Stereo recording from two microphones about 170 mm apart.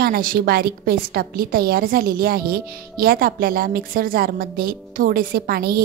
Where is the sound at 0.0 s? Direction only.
60° right (ahead or behind).